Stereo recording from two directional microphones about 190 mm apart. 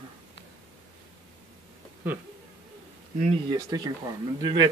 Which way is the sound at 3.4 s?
20° right (ahead or behind).